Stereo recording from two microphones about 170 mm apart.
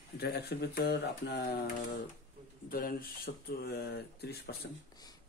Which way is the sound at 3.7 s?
70° left (ahead or behind).